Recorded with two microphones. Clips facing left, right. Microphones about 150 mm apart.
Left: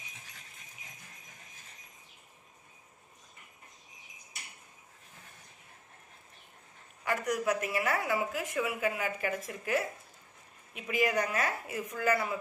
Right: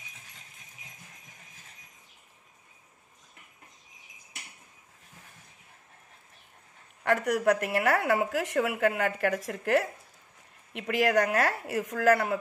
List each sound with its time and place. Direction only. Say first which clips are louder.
7.0 s a woman's voice: right 5 dB; 60° right (ahead or behind)